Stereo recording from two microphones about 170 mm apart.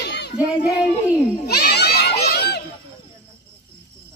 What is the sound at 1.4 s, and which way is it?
Children playing, 70° left (ahead or behind).